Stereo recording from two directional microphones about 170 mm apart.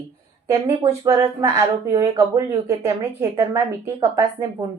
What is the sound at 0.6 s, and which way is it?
A woman's voice, 20° right (ahead or behind).